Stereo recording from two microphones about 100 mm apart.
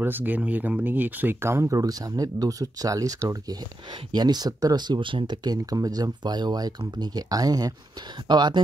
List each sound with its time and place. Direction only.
0.0 s speech: 20° right (ahead or behind)
4.1 s speech: 45° right (ahead or behind)